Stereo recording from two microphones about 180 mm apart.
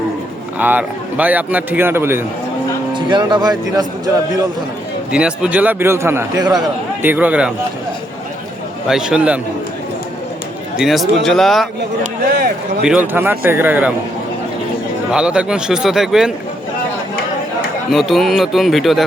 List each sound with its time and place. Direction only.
0.6 s a man's voice: 10° right (ahead or behind)
2.9 s speech: 25° right (ahead or behind)
5.1 s a man's voice: 5° right (ahead or behind)
8.9 s speech: 5° right (ahead or behind)
10.8 s speech: centre (ahead or behind)
12.3 s speech: 60° right (ahead or behind)
12.8 s a man's voice: 5° right (ahead or behind)
15.1 s speech: 5° right (ahead or behind)
17.9 s speech: centre (ahead or behind)